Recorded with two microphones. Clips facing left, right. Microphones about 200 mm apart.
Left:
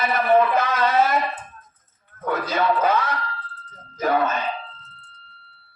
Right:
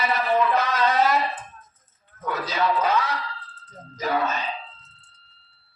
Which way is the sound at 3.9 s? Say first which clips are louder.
Left 4 dB; 55° left (ahead or behind).